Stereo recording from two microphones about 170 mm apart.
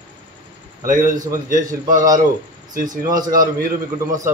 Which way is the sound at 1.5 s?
50° right (ahead or behind).